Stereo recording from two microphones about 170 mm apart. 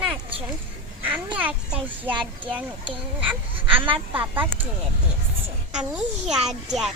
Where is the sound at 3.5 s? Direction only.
30° right (ahead or behind).